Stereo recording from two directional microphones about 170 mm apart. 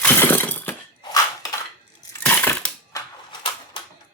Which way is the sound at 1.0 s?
20° left (ahead or behind).